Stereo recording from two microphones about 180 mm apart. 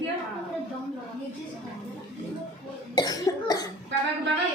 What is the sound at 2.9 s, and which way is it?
Cough, 20° left (ahead or behind).